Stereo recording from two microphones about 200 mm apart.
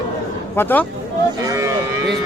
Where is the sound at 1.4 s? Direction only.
15° right (ahead or behind).